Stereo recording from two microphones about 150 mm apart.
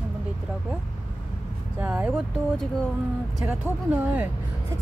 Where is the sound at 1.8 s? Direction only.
10° right (ahead or behind).